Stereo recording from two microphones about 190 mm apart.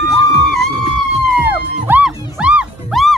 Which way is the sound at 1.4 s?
10° right (ahead or behind).